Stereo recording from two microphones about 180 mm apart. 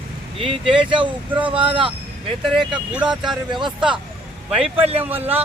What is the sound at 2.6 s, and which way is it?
Speech, 5° right (ahead or behind).